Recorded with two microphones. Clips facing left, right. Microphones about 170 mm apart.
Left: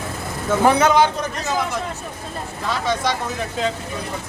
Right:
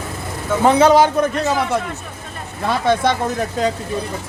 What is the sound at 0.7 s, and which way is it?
Speech, 30° right (ahead or behind).